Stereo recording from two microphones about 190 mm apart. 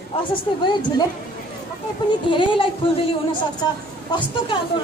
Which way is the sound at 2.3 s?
25° left (ahead or behind).